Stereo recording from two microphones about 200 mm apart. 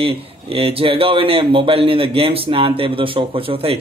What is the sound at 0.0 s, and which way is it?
A man's voice, 30° right (ahead or behind).